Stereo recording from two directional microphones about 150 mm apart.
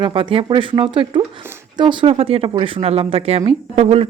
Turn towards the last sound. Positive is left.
turn(degrees=-40)  # may be behind; listen again after turning